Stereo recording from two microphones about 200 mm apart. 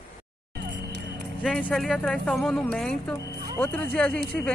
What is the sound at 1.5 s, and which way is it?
Speech, 5° left (ahead or behind).